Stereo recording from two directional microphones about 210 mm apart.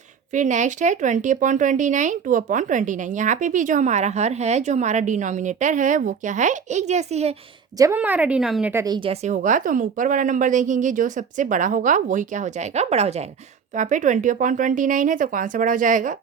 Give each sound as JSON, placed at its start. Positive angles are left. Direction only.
{"t": 0.3, "sound": "speech", "side_deg": -35}
{"t": 7.8, "sound": "a woman's voice", "side_deg": -10}
{"t": 8.7, "sound": "speech", "side_deg": -15}